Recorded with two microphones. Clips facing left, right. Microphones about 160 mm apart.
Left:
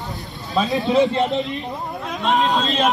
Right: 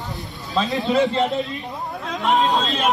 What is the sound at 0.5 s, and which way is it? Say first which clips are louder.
Speech: left 2 dB; 20° left (ahead or behind).